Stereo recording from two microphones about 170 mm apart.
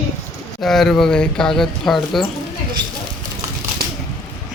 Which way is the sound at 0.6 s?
Centre (ahead or behind).